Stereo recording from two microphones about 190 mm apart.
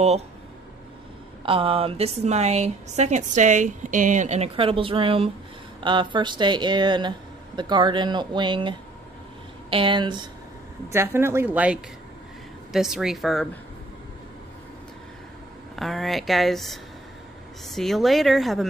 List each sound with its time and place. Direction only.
1.4 s speech: 30° right (ahead or behind)
10.9 s speech: 15° right (ahead or behind)
15.7 s speech: centre (ahead or behind)